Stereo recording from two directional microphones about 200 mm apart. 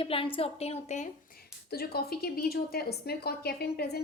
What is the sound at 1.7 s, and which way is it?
A woman's voice, 50° left (ahead or behind).